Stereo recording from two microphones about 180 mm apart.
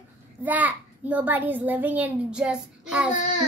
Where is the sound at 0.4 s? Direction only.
10° right (ahead or behind).